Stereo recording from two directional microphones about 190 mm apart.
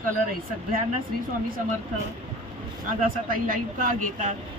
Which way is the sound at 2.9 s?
45° right (ahead or behind).